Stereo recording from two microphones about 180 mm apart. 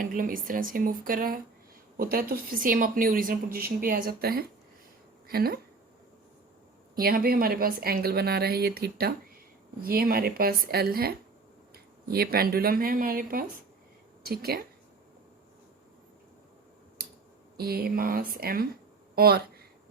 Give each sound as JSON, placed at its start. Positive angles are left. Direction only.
{"t": 0.0, "sound": "a woman's voice", "side_deg": -50}
{"t": 7.0, "sound": "a woman's voice", "side_deg": -55}
{"t": 17.6, "sound": "a woman's voice", "side_deg": -60}